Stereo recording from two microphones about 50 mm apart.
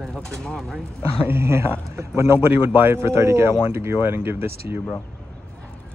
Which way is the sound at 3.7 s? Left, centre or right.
Right.